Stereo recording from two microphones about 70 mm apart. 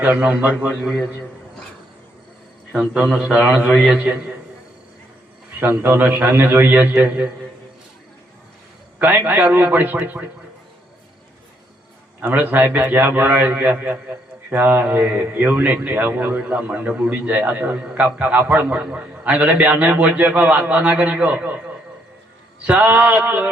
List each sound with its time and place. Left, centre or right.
0.2 s a man's voice: centre
0.8 s a man's voice: centre
2.8 s a man's voice: centre
3.9 s a man's voice: centre
5.5 s a man's voice: right
9.0 s a man's voice: right
12.4 s a man's voice: right